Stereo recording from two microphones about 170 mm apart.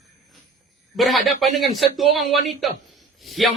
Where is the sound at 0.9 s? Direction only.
Centre (ahead or behind).